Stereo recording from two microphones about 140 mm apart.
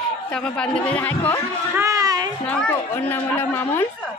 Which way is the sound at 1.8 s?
25° right (ahead or behind).